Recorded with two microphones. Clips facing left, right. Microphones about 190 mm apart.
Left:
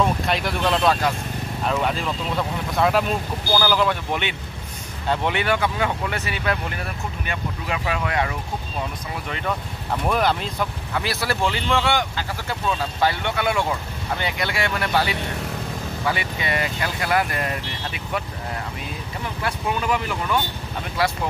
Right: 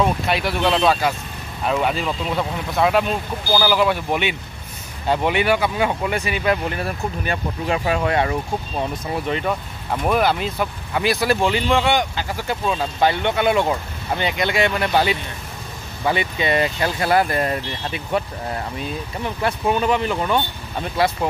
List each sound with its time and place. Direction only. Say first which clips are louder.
0.3 s speech: right 2 dB; centre (ahead or behind)
6.8 s speech: right 6 dB; 35° right (ahead or behind)
10.0 s speech: right 3 dB; 5° right (ahead or behind); by 18.2 s 30° right (ahead or behind)
19.4 s speech: right 5 dB; 25° right (ahead or behind)